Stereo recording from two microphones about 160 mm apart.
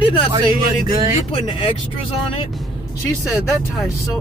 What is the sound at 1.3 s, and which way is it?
Speech, 30° left (ahead or behind).